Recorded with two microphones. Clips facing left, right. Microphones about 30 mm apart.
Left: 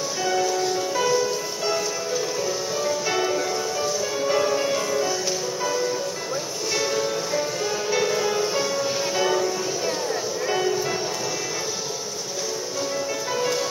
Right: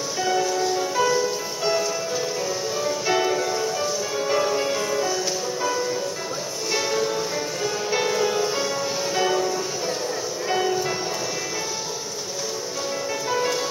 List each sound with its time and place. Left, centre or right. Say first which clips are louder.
0.2 s music: right 1 dB; centre
6.7 s music: right 1 dB; centre
10.5 s music: right 1 dB; centre
13.3 s music: right 2 dB; centre